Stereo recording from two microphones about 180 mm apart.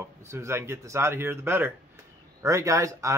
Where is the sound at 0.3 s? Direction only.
15° right (ahead or behind).